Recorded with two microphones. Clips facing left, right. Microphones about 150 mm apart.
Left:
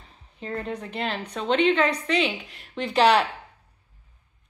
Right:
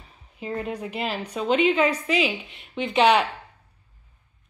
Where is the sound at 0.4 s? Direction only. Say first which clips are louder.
Right 2 dB; 10° right (ahead or behind).